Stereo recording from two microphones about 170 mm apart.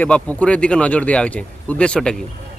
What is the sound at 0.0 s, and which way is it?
Speech, 10° left (ahead or behind).